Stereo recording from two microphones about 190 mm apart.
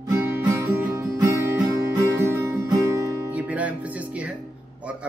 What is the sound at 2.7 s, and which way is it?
Guitar, 15° right (ahead or behind).